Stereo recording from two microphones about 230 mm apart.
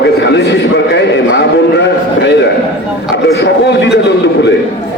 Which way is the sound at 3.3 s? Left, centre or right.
Left.